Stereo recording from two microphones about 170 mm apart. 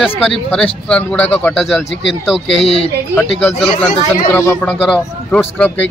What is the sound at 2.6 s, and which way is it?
Speech, 35° left (ahead or behind).